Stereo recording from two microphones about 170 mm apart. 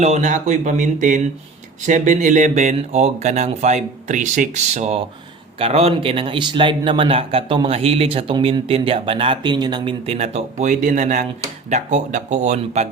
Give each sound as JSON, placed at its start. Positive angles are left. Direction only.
{"t": 0.0, "sound": "speech", "side_deg": -45}
{"t": 10.1, "sound": "speech", "side_deg": -40}